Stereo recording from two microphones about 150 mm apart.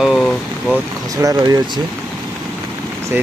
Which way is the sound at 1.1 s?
25° right (ahead or behind).